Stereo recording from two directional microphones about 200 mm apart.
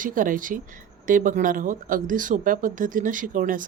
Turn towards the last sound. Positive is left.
turn(degrees=-40)  # may be behind; listen again after turning